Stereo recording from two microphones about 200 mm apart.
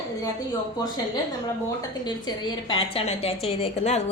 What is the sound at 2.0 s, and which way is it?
A woman's voice, 20° left (ahead or behind).